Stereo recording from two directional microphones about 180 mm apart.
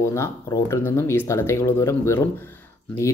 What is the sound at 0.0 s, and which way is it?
Speech, 15° left (ahead or behind).